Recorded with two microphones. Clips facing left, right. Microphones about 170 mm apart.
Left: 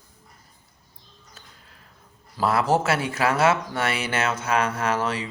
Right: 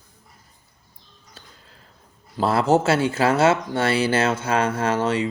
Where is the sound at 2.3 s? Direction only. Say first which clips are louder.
Right 3 dB; 30° right (ahead or behind).